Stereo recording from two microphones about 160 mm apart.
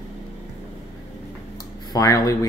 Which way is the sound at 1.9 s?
20° left (ahead or behind).